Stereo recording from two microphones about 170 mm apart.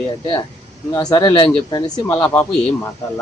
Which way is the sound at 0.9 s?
25° left (ahead or behind).